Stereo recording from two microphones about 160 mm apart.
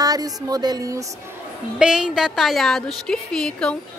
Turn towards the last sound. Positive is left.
turn(degrees=5)  # may be behind; listen again after turning